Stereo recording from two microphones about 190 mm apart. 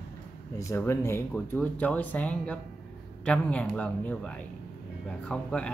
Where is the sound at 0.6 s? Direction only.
15° left (ahead or behind).